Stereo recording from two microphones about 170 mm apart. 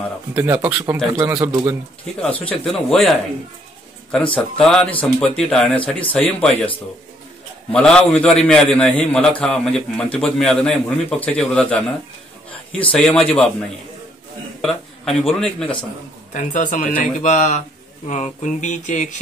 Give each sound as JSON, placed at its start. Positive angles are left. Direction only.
{"t": 0.3, "sound": "speech", "side_deg": -10}
{"t": 2.2, "sound": "a man's voice", "side_deg": 5}
{"t": 4.4, "sound": "a man's voice", "side_deg": 5}
{"t": 7.7, "sound": "a man's voice", "side_deg": 5}
{"t": 12.9, "sound": "a man's voice", "side_deg": 5}
{"t": 14.6, "sound": "speech", "side_deg": 0}
{"t": 16.3, "sound": "speech", "side_deg": 45}